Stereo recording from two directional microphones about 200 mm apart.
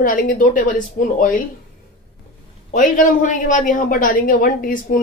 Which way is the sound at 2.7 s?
40° left (ahead or behind).